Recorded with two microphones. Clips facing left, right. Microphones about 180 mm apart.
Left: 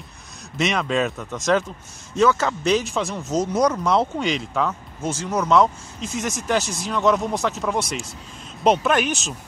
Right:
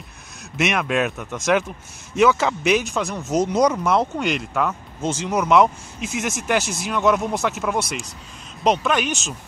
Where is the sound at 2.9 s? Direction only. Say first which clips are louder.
Even; centre (ahead or behind).